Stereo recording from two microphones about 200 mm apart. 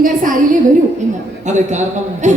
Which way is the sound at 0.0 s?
45° right (ahead or behind).